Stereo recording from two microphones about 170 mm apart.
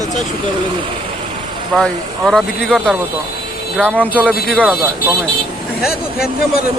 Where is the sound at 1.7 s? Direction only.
Centre (ahead or behind).